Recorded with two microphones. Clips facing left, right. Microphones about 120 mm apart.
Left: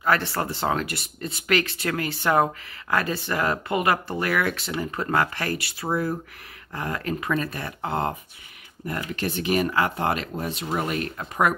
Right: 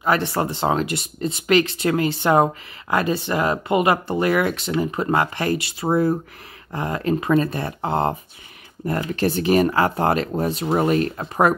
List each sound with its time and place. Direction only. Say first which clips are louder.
0.0 s speech: right 3 dB; 20° right (ahead or behind); by 11.5 s 35° right (ahead or behind)